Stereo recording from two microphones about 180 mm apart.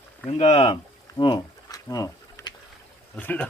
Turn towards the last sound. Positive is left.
turn(degrees=10)  # may be behind; listen again after turning